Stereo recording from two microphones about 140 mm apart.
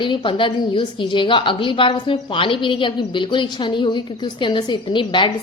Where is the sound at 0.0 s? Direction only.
35° left (ahead or behind).